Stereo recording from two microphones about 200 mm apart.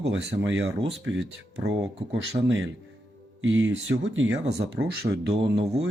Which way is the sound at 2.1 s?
65° right (ahead or behind).